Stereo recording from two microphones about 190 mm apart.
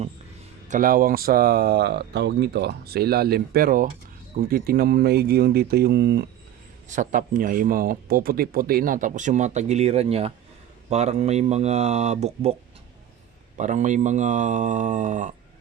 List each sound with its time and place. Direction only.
0.7 s speech: 45° right (ahead or behind)
6.9 s speech: 45° right (ahead or behind)
13.6 s speech: 40° right (ahead or behind)